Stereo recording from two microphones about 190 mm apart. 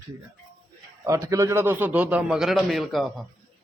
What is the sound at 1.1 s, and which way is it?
A man's voice, 15° right (ahead or behind).